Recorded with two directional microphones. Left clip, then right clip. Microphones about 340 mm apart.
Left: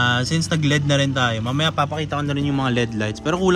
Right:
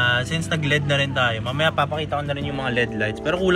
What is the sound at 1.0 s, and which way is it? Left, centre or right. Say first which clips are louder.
A man's voice: even; left.